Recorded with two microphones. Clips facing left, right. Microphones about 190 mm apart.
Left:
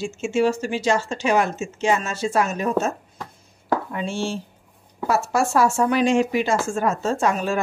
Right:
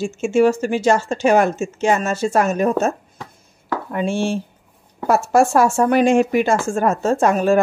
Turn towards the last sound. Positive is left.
turn(degrees=-50)  # may be behind; listen again after turning